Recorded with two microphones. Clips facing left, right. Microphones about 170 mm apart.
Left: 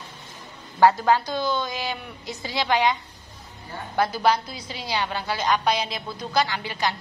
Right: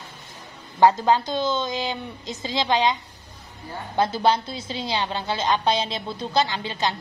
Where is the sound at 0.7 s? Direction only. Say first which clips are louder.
Even; 20° right (ahead or behind).